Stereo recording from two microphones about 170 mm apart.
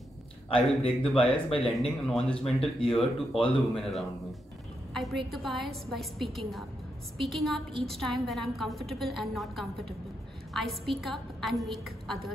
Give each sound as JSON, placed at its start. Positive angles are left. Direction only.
{"t": 0.7, "sound": "a woman's voice", "side_deg": 5}
{"t": 1.1, "sound": "speech", "side_deg": 35}
{"t": 2.0, "sound": "a woman's voice", "side_deg": 0}